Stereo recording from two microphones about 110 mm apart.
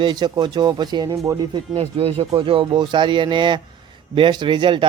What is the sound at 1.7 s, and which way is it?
Speech, 60° right (ahead or behind).